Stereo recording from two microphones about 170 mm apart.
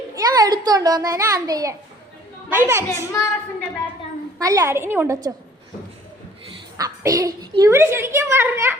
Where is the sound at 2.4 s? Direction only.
15° right (ahead or behind).